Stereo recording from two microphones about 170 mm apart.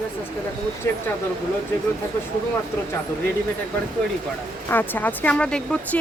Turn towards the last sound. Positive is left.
turn(degrees=5)  # may be behind; listen again after turning